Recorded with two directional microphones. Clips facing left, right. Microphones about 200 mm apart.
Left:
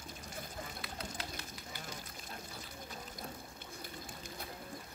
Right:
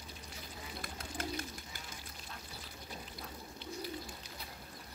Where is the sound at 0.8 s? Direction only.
50° right (ahead or behind).